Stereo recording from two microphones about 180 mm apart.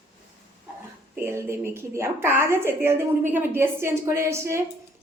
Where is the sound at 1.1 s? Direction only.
15° right (ahead or behind).